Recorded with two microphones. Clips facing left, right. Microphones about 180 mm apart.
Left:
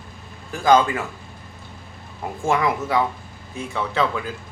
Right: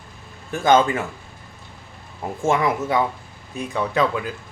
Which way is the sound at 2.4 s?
25° right (ahead or behind).